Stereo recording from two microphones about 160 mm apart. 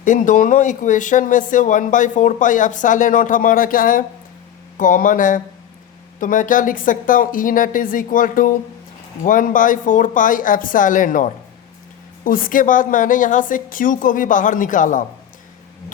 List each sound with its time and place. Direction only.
0.0 s a woman's voice: 55° left (ahead or behind)